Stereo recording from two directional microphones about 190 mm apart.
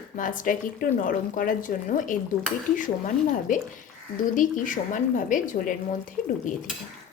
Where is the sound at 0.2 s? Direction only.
45° left (ahead or behind).